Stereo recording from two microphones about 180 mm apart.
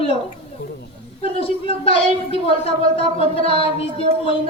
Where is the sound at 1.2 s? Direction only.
30° left (ahead or behind).